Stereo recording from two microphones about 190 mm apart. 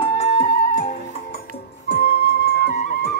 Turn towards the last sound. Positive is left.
turn(degrees=55)  # may be behind; listen again after turning